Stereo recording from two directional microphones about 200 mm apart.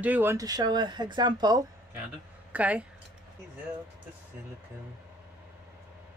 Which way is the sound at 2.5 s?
5° right (ahead or behind).